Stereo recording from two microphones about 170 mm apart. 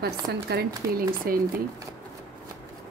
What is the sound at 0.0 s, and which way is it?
Speech, 75° right (ahead or behind).